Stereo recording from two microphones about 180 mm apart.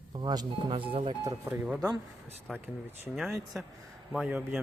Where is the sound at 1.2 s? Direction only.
10° right (ahead or behind).